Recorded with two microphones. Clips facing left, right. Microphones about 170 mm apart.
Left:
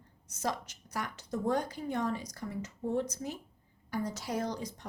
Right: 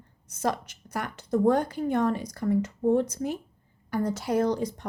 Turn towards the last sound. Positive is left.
turn(degrees=-60)  # may be behind; listen again after turning